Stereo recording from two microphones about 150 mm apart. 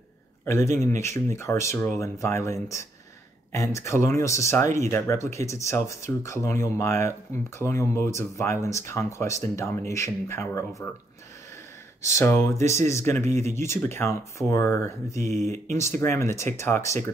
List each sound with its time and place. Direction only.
0.7 s speech: 20° left (ahead or behind)
12.2 s speech: 20° left (ahead or behind)
15.2 s speech: 50° right (ahead or behind)
16.0 s speech: 20° left (ahead or behind)